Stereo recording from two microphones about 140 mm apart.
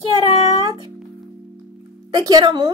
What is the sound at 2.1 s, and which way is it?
Speech, 30° right (ahead or behind).